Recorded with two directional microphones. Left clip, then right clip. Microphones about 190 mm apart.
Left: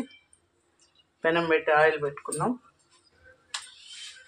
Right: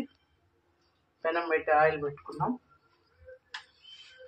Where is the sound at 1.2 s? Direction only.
35° left (ahead or behind).